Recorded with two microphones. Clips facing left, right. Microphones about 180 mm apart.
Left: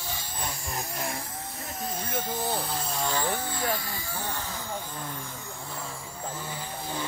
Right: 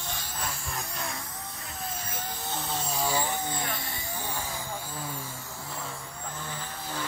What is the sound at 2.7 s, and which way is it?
Vehicle, 5° right (ahead or behind).